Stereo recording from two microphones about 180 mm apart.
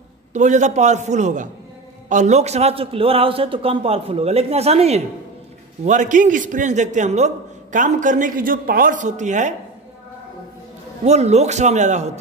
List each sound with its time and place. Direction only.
0.3 s a man's voice: 40° right (ahead or behind)
11.1 s a man's voice: 40° right (ahead or behind)